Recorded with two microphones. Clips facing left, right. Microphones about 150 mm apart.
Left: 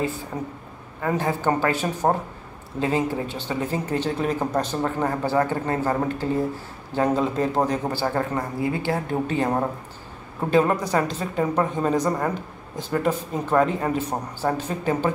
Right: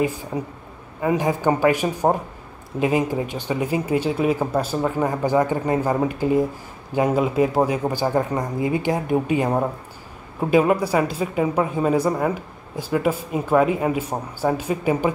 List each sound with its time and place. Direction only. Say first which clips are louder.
0.3 s speech: right 3 dB; 15° right (ahead or behind)